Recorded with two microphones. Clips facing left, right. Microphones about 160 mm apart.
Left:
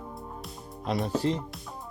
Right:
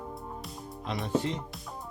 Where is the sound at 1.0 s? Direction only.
35° left (ahead or behind).